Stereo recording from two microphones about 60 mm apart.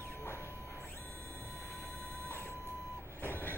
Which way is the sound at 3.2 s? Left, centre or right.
Left.